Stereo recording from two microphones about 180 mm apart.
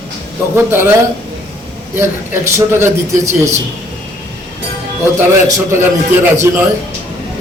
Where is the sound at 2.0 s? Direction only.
15° right (ahead or behind).